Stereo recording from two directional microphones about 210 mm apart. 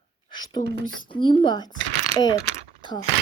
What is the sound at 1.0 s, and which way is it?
A woman's voice, 25° left (ahead or behind).